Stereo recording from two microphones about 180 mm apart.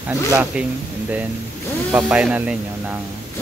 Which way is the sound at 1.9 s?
10° right (ahead or behind).